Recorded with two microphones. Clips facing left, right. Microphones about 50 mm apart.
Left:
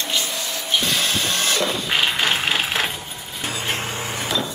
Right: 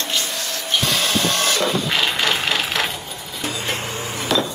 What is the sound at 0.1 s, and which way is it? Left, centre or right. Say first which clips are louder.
Music: even; centre.